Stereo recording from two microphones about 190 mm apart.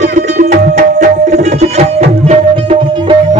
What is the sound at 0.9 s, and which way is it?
Tabla, 35° right (ahead or behind).